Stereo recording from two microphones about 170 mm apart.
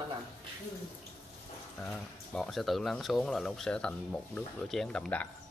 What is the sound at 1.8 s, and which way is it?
Speech, 5° left (ahead or behind).